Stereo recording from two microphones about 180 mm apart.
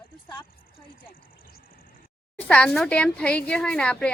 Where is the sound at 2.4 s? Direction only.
5° left (ahead or behind).